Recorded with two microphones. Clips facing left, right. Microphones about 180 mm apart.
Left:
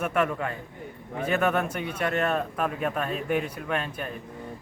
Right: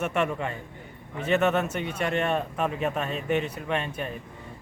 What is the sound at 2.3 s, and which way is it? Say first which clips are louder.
Speech: even; 5° right (ahead or behind).